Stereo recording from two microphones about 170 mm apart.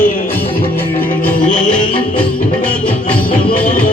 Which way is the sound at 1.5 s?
50° left (ahead or behind).